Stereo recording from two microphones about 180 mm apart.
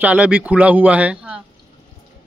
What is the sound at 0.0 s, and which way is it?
Speech, 5° right (ahead or behind).